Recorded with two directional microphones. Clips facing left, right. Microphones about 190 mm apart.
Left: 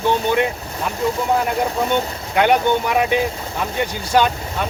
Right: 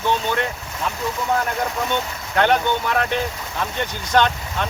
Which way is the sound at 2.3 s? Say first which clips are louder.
Left 3 dB; 10° left (ahead or behind).